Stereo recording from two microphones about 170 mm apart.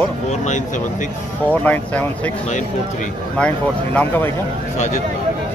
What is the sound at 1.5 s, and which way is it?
Speech, 10° left (ahead or behind).